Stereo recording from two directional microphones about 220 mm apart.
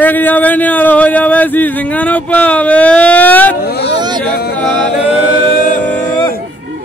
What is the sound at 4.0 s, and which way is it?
Speech, 20° right (ahead or behind).